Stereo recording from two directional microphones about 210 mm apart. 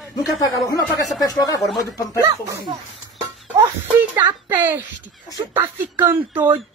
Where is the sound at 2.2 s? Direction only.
20° right (ahead or behind).